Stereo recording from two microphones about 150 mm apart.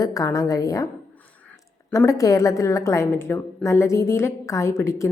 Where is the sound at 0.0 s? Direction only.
20° left (ahead or behind).